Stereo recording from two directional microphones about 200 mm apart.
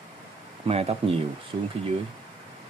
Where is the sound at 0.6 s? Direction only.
30° right (ahead or behind).